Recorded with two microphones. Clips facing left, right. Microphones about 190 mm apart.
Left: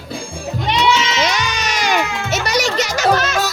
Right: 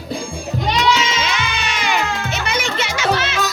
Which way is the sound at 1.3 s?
40° left (ahead or behind).